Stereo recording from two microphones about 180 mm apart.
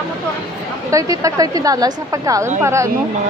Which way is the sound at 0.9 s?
20° right (ahead or behind).